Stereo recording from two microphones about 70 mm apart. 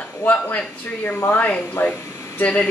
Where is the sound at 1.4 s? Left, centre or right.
Left.